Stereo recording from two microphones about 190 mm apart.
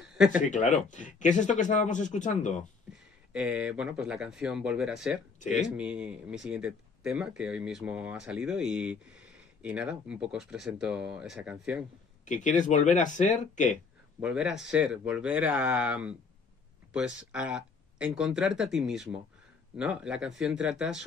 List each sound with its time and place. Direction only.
0.1 s a sound: centre (ahead or behind)
0.4 s speech: 40° left (ahead or behind)
2.9 s speech: 5° right (ahead or behind)
12.3 s speech: 40° left (ahead or behind)
14.2 s speech: 5° right (ahead or behind)